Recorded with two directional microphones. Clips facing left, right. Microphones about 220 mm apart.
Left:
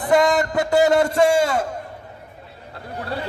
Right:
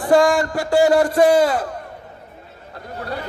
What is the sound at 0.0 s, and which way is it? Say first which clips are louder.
A man's voice: right 2 dB; 20° left (ahead or behind).